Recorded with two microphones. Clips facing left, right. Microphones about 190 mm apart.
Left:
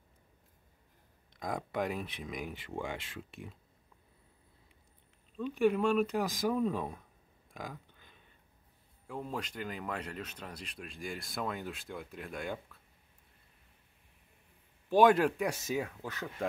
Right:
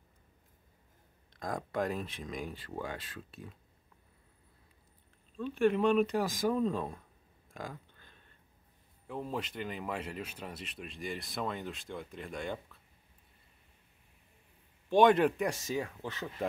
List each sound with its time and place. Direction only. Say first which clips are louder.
1.7 s speech: right 3 dB; 10° left (ahead or behind)
2.5 s speech: left 1 dB; 20° left (ahead or behind)
5.4 s speech: even; 15° left (ahead or behind)
5.7 s speech: right 2 dB; centre (ahead or behind)
7.9 s a sound: even; 10° left (ahead or behind)
9.0 s speech: right 2 dB; centre (ahead or behind)
14.9 s speech: even; 5° left (ahead or behind)